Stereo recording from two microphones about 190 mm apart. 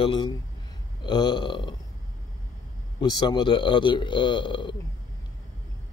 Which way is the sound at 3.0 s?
25° left (ahead or behind).